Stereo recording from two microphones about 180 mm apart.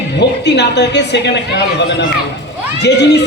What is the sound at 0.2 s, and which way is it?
Speech, 70° left (ahead or behind).